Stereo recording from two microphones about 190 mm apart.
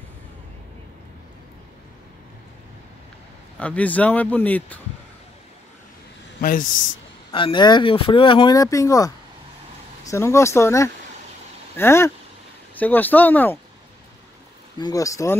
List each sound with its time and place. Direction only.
3.5 s speech: 5° left (ahead or behind)
6.4 s a man's voice: 45° left (ahead or behind)
7.2 s speech: 25° left (ahead or behind); by 13.6 s 10° left (ahead or behind)
14.8 s speech: 20° left (ahead or behind)